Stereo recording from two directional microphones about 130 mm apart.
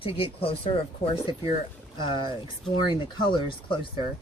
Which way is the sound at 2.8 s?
35° left (ahead or behind).